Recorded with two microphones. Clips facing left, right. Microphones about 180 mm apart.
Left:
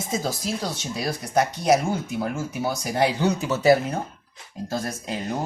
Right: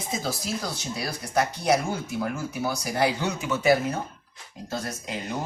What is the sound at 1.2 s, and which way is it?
Speech, 20° left (ahead or behind).